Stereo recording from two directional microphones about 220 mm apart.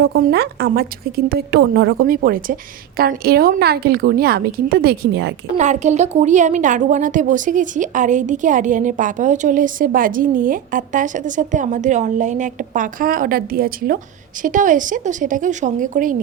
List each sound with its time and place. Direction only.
0.1 s a woman's voice: 45° right (ahead or behind)
5.5 s a woman's voice: 30° right (ahead or behind)